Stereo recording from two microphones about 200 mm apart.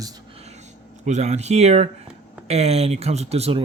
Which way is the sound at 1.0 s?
35° right (ahead or behind).